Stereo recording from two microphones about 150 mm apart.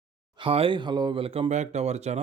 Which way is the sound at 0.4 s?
35° right (ahead or behind).